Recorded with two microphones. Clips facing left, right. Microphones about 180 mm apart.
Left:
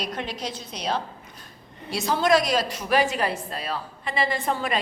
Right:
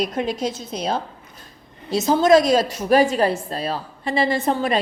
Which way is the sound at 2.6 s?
40° right (ahead or behind).